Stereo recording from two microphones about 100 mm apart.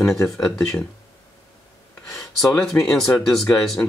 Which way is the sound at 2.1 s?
Centre (ahead or behind).